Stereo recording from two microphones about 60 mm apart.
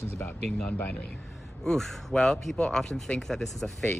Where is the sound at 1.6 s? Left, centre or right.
Centre.